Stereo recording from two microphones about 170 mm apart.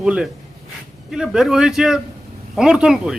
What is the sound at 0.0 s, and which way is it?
A man's voice, 5° right (ahead or behind).